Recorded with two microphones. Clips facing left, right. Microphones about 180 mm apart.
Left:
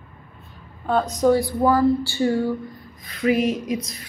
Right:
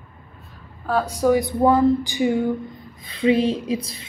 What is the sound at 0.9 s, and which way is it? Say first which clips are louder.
A woman's voice: even; 10° right (ahead or behind).